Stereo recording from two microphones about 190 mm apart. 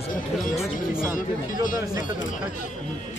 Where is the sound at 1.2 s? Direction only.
45° left (ahead or behind).